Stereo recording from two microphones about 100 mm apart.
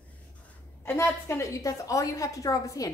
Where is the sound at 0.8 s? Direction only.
25° left (ahead or behind).